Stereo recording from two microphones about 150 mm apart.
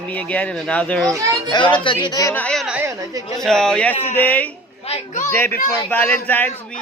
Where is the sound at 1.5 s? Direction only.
30° left (ahead or behind).